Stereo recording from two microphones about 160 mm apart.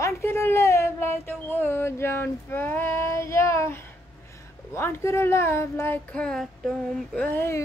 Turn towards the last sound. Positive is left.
turn(degrees=15)  # may be behind; listen again after turning